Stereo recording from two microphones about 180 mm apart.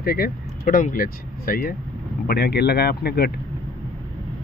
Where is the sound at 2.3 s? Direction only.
65° left (ahead or behind).